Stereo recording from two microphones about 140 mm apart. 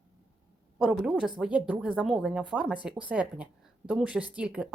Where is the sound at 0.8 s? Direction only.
5° right (ahead or behind).